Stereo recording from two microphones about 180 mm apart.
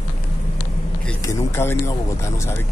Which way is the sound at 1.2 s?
15° left (ahead or behind).